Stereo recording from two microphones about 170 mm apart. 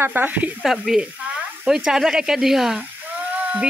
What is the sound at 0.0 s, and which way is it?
Speech, 10° right (ahead or behind).